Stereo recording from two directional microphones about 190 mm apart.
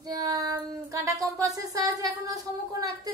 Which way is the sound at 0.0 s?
20° right (ahead or behind).